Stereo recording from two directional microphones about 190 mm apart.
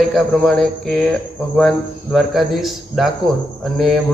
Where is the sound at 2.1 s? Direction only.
Centre (ahead or behind).